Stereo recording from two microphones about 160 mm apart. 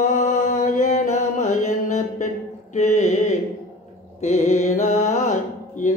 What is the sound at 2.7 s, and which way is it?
Mantra, 45° left (ahead or behind).